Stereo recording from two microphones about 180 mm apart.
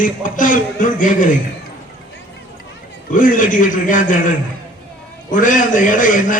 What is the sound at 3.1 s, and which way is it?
A man's voice, 50° left (ahead or behind).